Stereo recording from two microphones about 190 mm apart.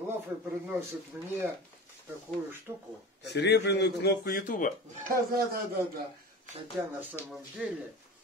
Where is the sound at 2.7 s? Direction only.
10° right (ahead or behind).